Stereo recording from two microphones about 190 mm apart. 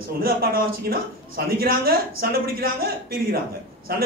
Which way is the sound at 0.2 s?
50° right (ahead or behind).